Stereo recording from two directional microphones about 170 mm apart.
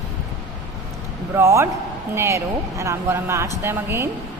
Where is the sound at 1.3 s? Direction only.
15° right (ahead or behind).